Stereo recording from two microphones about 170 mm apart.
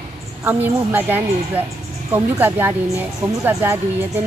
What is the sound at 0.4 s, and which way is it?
A woman's voice, 10° right (ahead or behind).